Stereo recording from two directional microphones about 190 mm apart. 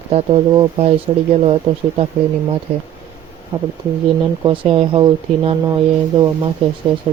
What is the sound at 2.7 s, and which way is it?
Speech, 30° right (ahead or behind).